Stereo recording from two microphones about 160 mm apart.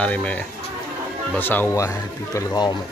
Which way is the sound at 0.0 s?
10° left (ahead or behind).